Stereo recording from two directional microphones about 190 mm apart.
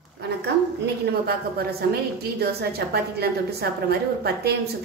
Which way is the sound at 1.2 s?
55° right (ahead or behind).